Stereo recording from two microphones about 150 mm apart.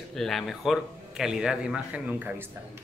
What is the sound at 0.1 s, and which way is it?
Speech, centre (ahead or behind).